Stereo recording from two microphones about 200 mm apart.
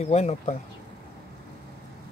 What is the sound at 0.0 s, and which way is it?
Speech, 35° left (ahead or behind).